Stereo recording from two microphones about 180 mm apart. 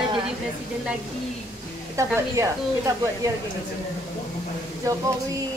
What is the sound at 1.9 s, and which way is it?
Speech, 20° right (ahead or behind).